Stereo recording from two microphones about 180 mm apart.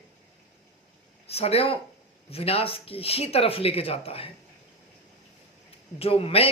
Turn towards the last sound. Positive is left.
turn(degrees=30)  # may be behind; listen again after turning